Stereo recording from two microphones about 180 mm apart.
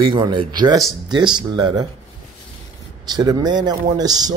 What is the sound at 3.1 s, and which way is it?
Speech, 20° right (ahead or behind).